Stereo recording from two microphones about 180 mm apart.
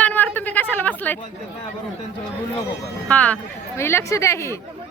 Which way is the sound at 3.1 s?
5° left (ahead or behind).